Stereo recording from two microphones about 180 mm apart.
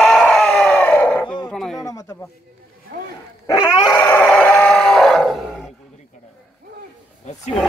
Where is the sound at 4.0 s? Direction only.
10° left (ahead or behind).